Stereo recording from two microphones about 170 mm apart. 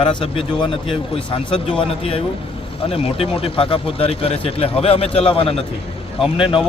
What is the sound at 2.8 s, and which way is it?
Speech, 35° left (ahead or behind).